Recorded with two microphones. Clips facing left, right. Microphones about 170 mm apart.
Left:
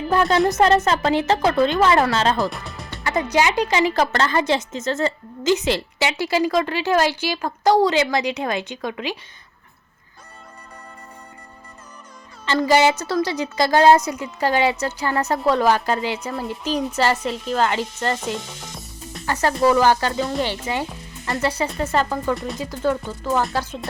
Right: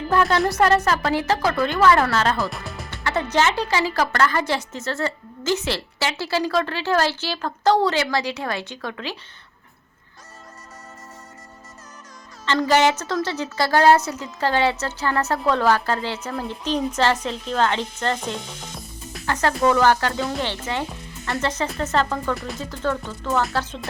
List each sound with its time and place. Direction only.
0.1 s speech: 20° left (ahead or behind)
2.5 s music: centre (ahead or behind)
3.0 s a woman's voice: 15° left (ahead or behind)
12.5 s a woman's voice: 10° left (ahead or behind)